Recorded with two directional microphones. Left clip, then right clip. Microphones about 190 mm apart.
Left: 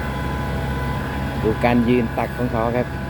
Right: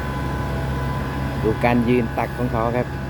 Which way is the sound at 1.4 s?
Centre (ahead or behind).